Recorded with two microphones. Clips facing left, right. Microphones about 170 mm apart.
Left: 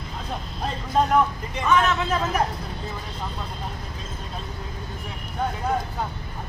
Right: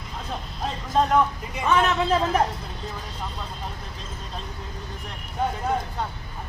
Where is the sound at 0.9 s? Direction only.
Centre (ahead or behind).